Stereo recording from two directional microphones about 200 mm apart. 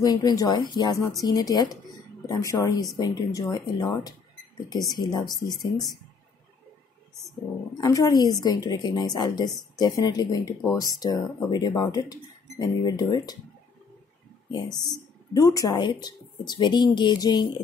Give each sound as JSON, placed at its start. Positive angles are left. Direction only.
{"t": 0.0, "sound": "speech", "side_deg": 20}
{"t": 7.7, "sound": "speech", "side_deg": 20}
{"t": 14.5, "sound": "speech", "side_deg": 20}